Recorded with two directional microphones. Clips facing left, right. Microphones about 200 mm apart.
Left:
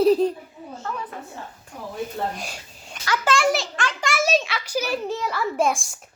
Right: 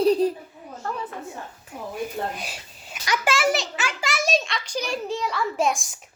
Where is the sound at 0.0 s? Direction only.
Centre (ahead or behind).